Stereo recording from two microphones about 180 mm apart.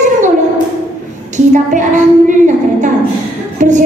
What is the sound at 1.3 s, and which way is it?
A woman's voice, 45° right (ahead or behind).